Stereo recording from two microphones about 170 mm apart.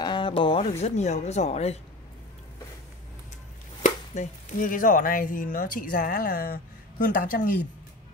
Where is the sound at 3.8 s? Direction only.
50° left (ahead or behind).